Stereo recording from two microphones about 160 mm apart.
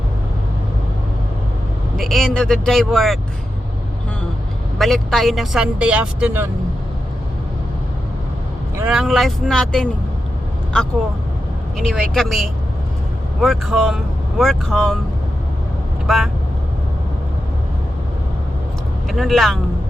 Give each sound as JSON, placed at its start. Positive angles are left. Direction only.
{"t": 2.0, "sound": "speech", "side_deg": 0}
{"t": 4.8, "sound": "speech", "side_deg": 0}
{"t": 8.8, "sound": "speech", "side_deg": -5}
{"t": 11.8, "sound": "speech", "side_deg": 0}
{"t": 16.0, "sound": "speech", "side_deg": 0}
{"t": 19.0, "sound": "speech", "side_deg": 0}